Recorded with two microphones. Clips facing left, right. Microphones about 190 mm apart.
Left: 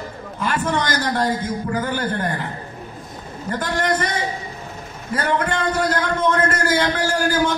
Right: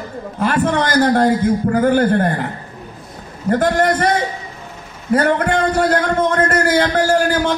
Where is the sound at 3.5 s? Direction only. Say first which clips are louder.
Right 7 dB; 55° right (ahead or behind).